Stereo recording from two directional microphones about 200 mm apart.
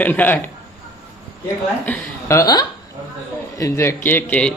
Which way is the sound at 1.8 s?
10° left (ahead or behind).